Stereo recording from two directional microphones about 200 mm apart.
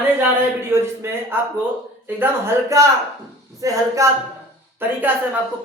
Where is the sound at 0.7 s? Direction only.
10° right (ahead or behind).